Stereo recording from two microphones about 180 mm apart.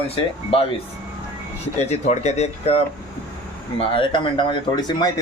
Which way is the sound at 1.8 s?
40° left (ahead or behind).